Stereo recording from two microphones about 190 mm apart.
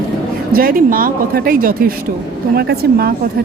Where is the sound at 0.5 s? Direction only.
50° right (ahead or behind).